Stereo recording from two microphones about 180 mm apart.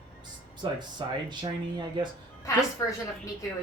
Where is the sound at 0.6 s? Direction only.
25° right (ahead or behind).